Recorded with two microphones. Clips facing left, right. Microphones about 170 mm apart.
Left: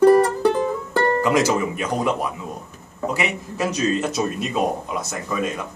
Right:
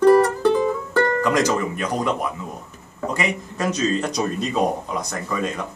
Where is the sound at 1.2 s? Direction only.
5° left (ahead or behind).